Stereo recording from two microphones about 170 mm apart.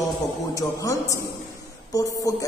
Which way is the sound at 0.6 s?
20° left (ahead or behind).